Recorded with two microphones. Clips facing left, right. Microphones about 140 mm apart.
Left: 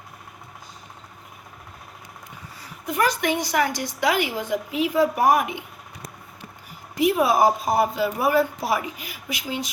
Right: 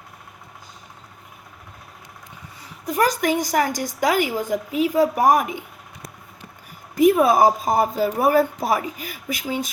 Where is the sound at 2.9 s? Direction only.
40° right (ahead or behind).